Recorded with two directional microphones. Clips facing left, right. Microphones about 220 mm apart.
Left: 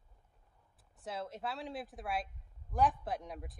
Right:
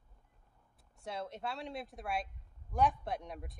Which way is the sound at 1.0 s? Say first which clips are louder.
Even; centre (ahead or behind).